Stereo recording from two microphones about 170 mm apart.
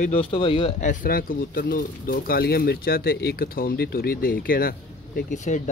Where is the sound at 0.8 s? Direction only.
50° left (ahead or behind).